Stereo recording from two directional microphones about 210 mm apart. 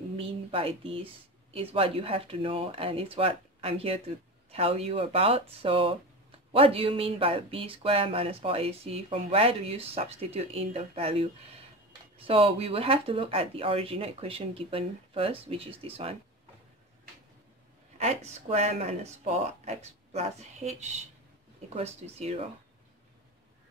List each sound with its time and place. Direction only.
0.2 s speech: 25° right (ahead or behind)
17.9 s speech: 30° right (ahead or behind)